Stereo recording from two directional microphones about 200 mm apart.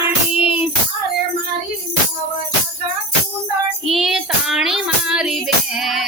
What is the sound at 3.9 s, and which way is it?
Music, centre (ahead or behind).